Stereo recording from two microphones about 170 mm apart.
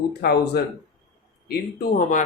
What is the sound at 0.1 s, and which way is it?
Speech, 70° left (ahead or behind).